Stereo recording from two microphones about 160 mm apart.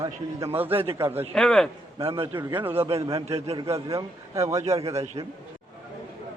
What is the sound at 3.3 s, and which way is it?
Speech, 40° right (ahead or behind).